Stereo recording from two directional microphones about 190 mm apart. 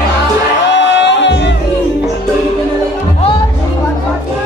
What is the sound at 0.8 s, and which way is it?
Music, 70° left (ahead or behind).